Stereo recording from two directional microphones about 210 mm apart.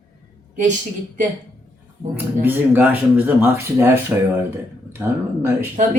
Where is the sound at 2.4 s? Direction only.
10° right (ahead or behind).